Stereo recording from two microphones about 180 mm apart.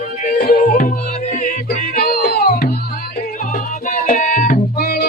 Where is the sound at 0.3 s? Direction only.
50° left (ahead or behind).